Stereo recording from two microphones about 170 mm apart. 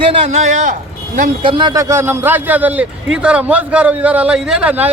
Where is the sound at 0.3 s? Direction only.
45° right (ahead or behind).